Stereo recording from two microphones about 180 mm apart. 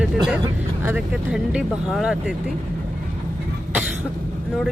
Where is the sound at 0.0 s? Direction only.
5° right (ahead or behind).